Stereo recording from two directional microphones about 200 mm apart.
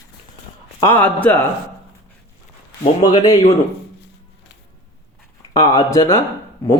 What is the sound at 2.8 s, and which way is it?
Speech, 25° left (ahead or behind).